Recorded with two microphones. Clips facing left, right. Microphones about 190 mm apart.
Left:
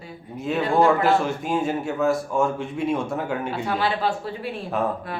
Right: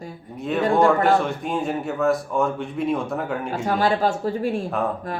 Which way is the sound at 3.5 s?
45° right (ahead or behind).